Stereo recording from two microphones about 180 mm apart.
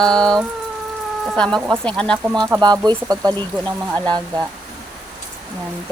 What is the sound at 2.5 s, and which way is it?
Speech, 20° right (ahead or behind).